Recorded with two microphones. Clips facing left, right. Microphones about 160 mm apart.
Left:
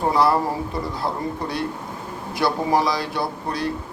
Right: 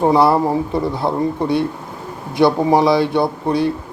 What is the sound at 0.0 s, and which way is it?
A man's voice, 25° right (ahead or behind).